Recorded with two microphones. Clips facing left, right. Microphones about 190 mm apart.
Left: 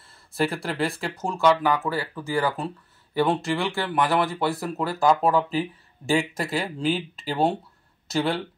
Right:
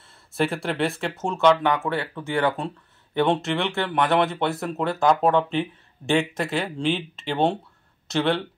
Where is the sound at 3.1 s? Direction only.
Centre (ahead or behind).